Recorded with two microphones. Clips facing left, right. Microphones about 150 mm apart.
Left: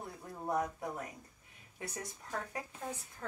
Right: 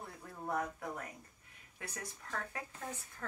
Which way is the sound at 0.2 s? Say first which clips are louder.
Left 3 dB; 20° left (ahead or behind).